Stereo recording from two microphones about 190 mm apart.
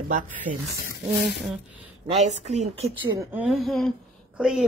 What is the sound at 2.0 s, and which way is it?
Speech, 35° right (ahead or behind).